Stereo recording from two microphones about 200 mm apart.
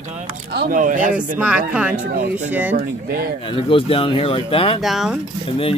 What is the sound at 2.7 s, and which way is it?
Speech, 50° right (ahead or behind).